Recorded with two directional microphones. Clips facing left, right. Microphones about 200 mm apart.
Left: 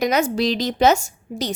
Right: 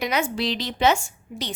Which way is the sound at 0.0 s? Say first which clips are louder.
Left 6 dB; 40° left (ahead or behind).